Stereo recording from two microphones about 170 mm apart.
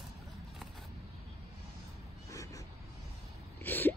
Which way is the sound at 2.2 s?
20° left (ahead or behind).